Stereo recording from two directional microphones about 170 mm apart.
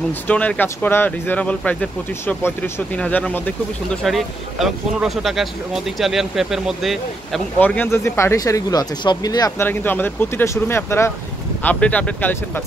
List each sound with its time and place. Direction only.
0.3 s speech: 10° left (ahead or behind)
7.6 s speech: 10° left (ahead or behind)
9.7 s speech: 10° left (ahead or behind)